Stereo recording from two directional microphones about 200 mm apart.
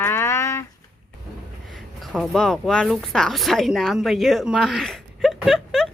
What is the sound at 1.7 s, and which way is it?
Speech, centre (ahead or behind).